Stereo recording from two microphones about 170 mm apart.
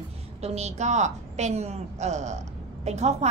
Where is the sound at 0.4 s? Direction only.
40° right (ahead or behind).